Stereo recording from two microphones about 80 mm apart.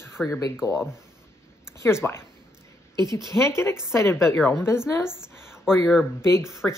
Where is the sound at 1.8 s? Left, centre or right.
Left.